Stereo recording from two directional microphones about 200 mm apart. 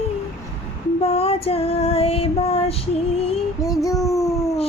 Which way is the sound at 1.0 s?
30° left (ahead or behind).